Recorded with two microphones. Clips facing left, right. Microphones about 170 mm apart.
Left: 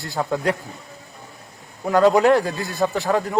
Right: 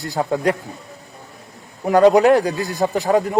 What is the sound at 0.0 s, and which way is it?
Speech, 20° right (ahead or behind).